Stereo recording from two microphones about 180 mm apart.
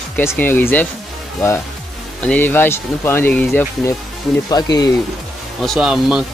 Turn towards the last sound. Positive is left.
turn(degrees=-5)  # may be behind; listen again after turning